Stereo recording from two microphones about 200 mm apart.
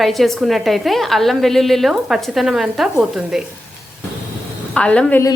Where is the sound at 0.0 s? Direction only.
Centre (ahead or behind).